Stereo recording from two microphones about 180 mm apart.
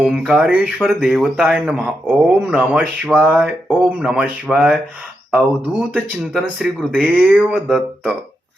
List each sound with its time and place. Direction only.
0.0 s speech: centre (ahead or behind)
5.9 s speech: 5° right (ahead or behind)